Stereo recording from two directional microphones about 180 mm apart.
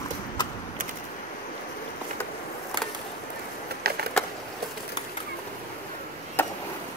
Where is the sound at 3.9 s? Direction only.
60° right (ahead or behind).